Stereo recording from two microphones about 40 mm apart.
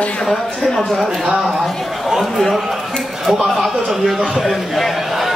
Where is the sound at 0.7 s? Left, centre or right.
Centre.